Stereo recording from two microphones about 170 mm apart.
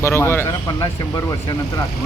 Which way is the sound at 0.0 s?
15° left (ahead or behind).